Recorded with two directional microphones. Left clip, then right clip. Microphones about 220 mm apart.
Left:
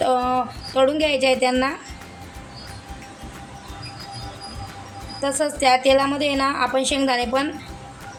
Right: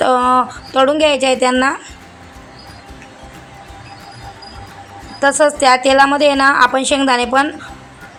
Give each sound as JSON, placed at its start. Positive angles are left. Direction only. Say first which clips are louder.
{"t": 0.0, "sound": "speech", "louder": "right 8 dB", "side_deg": -15}
{"t": 5.2, "sound": "a woman's voice", "louder": "right 9 dB", "side_deg": -20}